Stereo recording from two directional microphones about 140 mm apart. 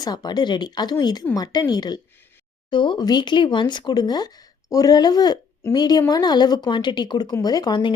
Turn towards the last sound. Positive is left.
turn(degrees=30)  # may be behind; listen again after turning